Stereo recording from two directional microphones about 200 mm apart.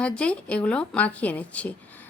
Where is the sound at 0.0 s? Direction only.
5° left (ahead or behind).